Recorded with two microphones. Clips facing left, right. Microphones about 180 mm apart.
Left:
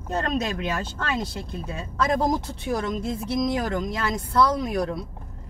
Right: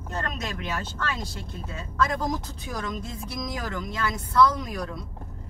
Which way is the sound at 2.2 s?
30° left (ahead or behind).